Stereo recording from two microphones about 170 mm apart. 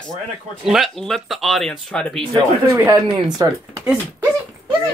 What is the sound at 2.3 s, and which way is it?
Speech, 20° right (ahead or behind).